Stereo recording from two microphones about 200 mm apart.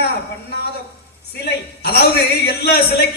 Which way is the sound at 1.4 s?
55° left (ahead or behind).